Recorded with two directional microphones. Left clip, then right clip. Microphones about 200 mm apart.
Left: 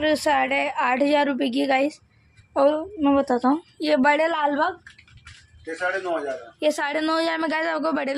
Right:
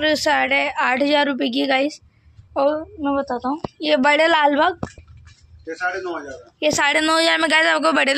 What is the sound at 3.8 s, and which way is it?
Speech, 5° left (ahead or behind).